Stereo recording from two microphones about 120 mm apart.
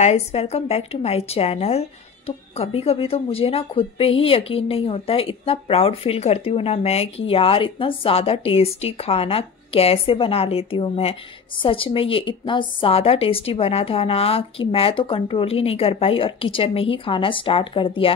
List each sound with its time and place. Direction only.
0.0 s speech: 60° left (ahead or behind); by 18.1 s 45° left (ahead or behind)